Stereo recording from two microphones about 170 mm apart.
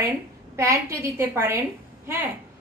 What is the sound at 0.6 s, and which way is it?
A woman's voice, 15° right (ahead or behind).